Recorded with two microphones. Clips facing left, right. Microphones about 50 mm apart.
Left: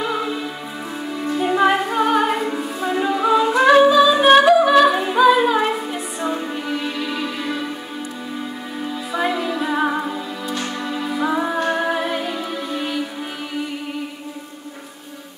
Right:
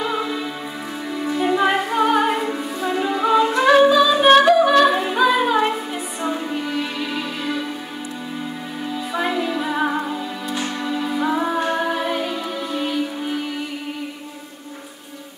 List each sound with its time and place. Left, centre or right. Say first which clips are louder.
0.0 s music: even; centre
9.1 s music: left 1 dB; centre